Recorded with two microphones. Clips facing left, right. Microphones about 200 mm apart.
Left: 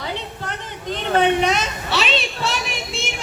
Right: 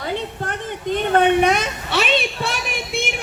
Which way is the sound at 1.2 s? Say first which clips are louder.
Right 1 dB; 55° right (ahead or behind).